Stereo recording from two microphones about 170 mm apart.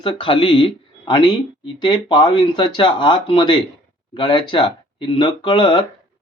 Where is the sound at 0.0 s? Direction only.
30° left (ahead or behind).